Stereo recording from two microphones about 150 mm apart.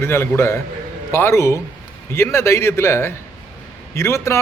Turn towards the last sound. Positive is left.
turn(degrees=20)  # may be behind; listen again after turning